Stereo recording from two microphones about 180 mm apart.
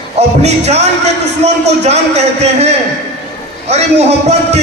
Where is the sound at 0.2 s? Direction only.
35° right (ahead or behind).